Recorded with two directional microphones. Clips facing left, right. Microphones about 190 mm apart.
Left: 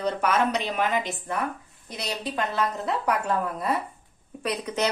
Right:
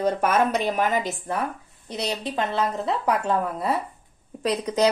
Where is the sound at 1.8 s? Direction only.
25° right (ahead or behind).